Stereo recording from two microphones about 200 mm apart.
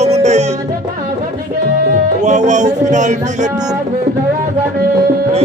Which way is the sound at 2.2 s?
35° right (ahead or behind).